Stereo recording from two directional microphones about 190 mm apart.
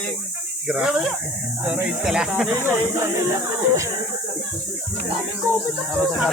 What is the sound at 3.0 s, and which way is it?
Speech, 15° right (ahead or behind).